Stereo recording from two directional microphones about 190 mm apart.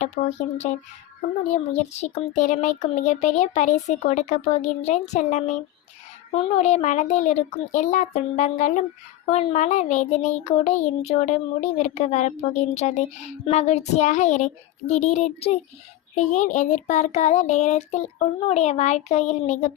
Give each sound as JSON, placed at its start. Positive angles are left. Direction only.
{"t": 0.0, "sound": "speech", "side_deg": 40}